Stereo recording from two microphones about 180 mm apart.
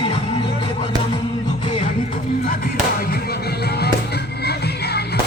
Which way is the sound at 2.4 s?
55° left (ahead or behind).